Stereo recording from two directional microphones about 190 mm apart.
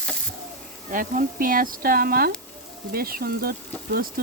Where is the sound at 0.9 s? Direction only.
45° right (ahead or behind).